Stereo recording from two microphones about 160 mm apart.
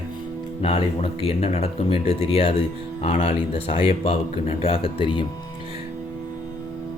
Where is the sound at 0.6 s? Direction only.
35° left (ahead or behind).